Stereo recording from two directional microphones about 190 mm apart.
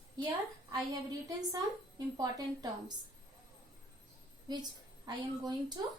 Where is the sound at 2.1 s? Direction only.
20° right (ahead or behind).